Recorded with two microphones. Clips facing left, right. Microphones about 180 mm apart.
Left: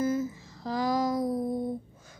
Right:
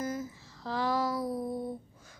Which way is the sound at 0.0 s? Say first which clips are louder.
Left 7 dB; 25° left (ahead or behind).